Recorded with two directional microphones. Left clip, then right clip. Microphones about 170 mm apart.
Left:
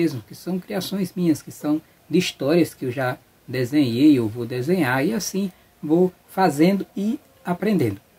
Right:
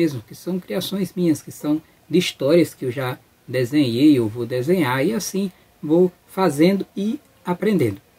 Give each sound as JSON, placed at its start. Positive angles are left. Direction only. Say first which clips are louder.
{"t": 0.0, "sound": "speech", "louder": "right 2 dB", "side_deg": 5}